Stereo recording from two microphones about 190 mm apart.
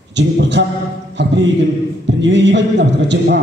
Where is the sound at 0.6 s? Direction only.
70° right (ahead or behind).